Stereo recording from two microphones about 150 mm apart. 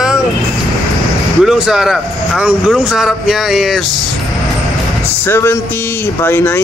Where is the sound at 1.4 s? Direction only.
5° right (ahead or behind).